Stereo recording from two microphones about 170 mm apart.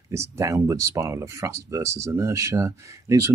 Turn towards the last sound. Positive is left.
turn(degrees=-15)  # may be behind; listen again after turning